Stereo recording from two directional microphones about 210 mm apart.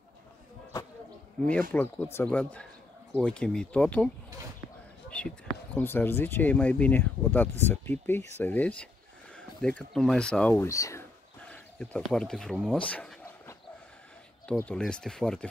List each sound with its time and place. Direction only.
1.7 s speech: 10° left (ahead or behind)
5.8 s speech: 10° left (ahead or behind)
12.9 s a sound: 5° left (ahead or behind)
14.5 s speech: 5° left (ahead or behind)